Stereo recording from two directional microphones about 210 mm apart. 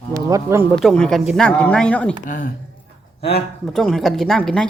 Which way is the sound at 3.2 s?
30° left (ahead or behind).